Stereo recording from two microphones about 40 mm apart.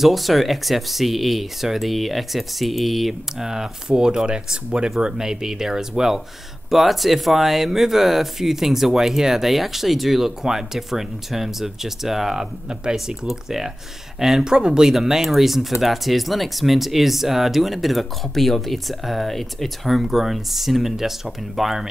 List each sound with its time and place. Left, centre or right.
0.0 s speech: centre
3.3 s speech: centre